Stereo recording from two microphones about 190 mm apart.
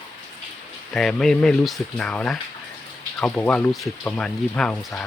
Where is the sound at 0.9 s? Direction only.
5° left (ahead or behind).